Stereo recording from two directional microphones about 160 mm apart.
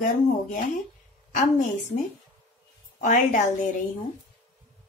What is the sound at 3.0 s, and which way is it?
Speech, 50° left (ahead or behind).